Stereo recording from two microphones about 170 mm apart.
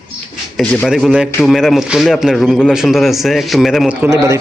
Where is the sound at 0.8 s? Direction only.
5° right (ahead or behind).